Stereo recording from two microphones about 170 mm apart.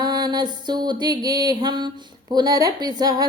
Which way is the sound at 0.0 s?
25° right (ahead or behind).